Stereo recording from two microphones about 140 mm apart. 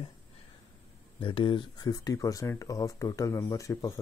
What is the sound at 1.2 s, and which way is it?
Speech, 35° left (ahead or behind).